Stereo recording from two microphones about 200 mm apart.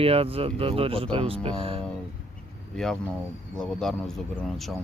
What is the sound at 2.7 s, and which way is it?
Speech, 5° left (ahead or behind).